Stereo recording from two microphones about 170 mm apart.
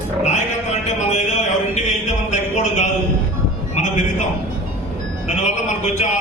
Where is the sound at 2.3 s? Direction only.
45° left (ahead or behind).